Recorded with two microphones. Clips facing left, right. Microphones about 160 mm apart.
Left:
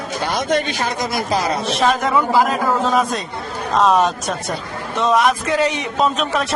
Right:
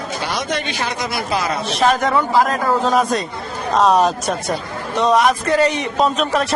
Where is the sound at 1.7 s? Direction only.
Centre (ahead or behind).